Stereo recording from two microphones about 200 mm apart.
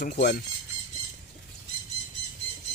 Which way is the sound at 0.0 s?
50° left (ahead or behind).